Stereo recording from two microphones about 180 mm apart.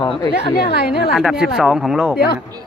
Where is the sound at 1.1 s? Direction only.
Centre (ahead or behind).